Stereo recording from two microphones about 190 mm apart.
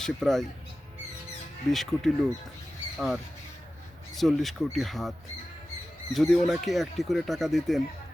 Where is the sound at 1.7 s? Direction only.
Centre (ahead or behind).